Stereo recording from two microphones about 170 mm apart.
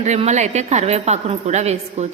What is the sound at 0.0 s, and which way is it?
A woman's voice, 40° right (ahead or behind).